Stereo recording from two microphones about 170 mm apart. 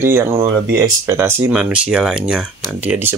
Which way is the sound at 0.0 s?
15° right (ahead or behind).